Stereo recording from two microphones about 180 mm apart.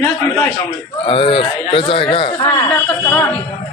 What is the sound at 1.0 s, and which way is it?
Speech, 30° left (ahead or behind).